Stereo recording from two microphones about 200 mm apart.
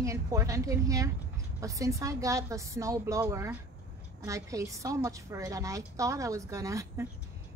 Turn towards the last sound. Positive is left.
turn(degrees=-15)  # may be behind; listen again after turning